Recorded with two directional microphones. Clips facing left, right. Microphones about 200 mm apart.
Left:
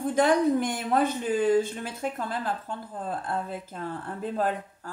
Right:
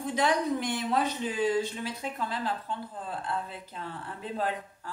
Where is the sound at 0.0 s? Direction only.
50° left (ahead or behind).